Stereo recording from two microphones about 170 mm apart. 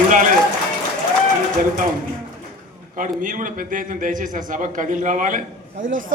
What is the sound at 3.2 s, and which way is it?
A man's voice, 55° right (ahead or behind).